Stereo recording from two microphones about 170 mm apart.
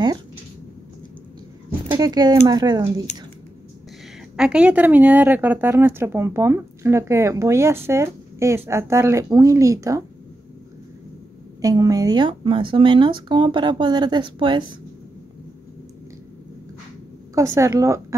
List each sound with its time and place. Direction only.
1.9 s a woman's voice: 25° right (ahead or behind)
4.4 s a woman's voice: 5° right (ahead or behind)
11.6 s a woman's voice: 20° right (ahead or behind)
17.4 s a woman's voice: 20° right (ahead or behind)